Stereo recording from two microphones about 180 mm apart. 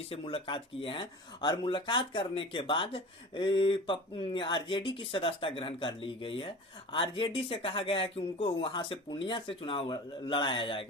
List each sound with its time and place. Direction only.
0.1 s speech: 30° left (ahead or behind)